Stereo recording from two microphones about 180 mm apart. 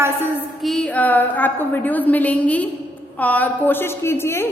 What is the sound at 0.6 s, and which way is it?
A woman's voice, 5° left (ahead or behind).